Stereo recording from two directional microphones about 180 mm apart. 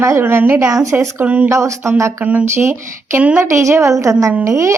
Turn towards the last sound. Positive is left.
turn(degrees=-15)  # may be behind; listen again after turning